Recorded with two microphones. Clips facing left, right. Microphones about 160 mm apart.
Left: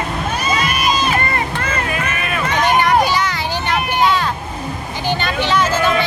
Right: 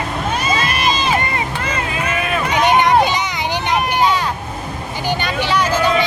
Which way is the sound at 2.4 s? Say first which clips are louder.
Right 1 dB; 20° right (ahead or behind).